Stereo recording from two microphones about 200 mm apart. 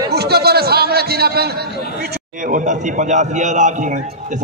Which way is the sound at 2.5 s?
40° right (ahead or behind).